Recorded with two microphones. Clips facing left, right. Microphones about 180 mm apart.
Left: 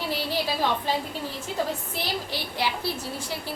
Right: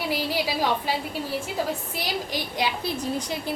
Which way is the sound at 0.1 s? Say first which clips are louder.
Right 1 dB; 10° right (ahead or behind).